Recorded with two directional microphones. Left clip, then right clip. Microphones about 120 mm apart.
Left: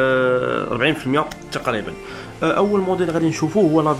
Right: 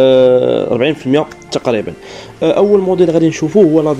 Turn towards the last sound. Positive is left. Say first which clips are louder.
# right 7 dB
turn(degrees=-25)  # may be behind; listen again after turning